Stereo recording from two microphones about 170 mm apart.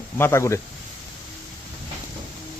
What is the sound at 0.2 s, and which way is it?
Speech, 15° left (ahead or behind).